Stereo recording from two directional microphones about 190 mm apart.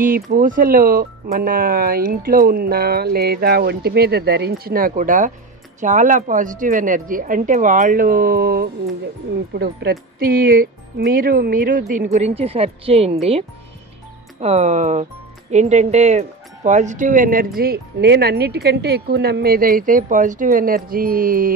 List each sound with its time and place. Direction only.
0.0 s speech: 50° right (ahead or behind)